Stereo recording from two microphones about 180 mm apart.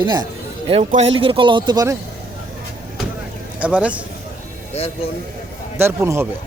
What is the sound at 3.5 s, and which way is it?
Speech, 5° right (ahead or behind).